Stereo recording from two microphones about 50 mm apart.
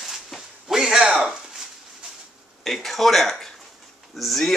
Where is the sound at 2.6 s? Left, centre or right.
Centre.